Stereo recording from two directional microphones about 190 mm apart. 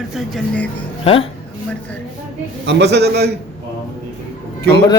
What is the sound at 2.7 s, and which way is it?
Speech, 65° right (ahead or behind).